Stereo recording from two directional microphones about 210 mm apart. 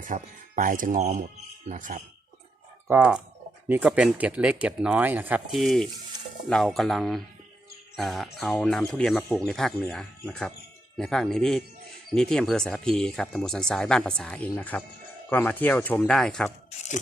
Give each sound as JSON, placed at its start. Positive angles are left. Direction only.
{"t": 0.0, "sound": "speech", "side_deg": -40}
{"t": 2.8, "sound": "speech", "side_deg": -10}